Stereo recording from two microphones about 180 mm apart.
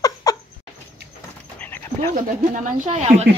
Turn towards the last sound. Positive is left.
turn(degrees=-40)  # may be behind; listen again after turning